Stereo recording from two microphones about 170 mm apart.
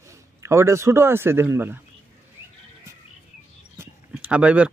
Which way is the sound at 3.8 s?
10° right (ahead or behind).